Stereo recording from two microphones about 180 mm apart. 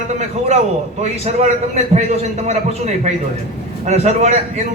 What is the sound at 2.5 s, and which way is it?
A man's voice, 40° right (ahead or behind).